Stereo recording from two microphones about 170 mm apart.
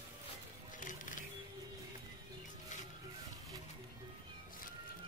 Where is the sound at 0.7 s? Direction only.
50° left (ahead or behind).